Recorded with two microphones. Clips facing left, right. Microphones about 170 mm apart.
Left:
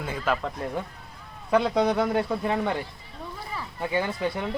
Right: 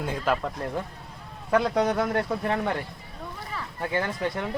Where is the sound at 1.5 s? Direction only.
10° left (ahead or behind).